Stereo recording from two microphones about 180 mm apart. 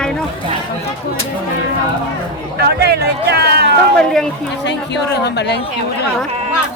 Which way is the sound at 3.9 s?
5° left (ahead or behind).